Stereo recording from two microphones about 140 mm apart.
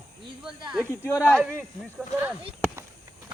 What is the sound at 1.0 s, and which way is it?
Speech, 10° left (ahead or behind).